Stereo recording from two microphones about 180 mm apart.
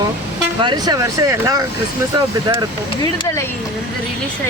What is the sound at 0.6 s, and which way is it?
Speech, 25° right (ahead or behind).